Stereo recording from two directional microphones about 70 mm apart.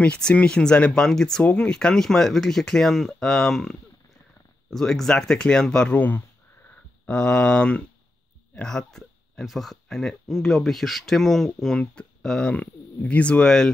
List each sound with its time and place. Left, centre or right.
0.0 s speech: centre
5.9 s speech: left
7.1 s speech: centre
12.5 s speech: left